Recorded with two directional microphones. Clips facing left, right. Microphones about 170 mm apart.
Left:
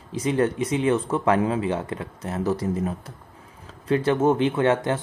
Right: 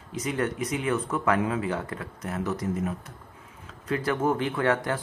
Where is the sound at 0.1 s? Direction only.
30° left (ahead or behind).